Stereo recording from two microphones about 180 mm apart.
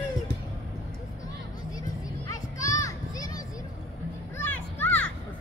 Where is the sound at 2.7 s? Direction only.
20° left (ahead or behind).